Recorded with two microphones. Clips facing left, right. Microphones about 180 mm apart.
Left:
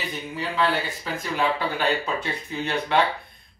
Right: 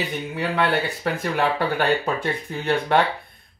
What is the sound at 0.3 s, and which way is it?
Speech, 65° right (ahead or behind).